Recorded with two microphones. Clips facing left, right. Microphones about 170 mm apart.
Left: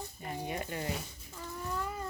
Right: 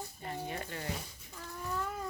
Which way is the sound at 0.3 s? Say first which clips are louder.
Left 2 dB; 15° left (ahead or behind).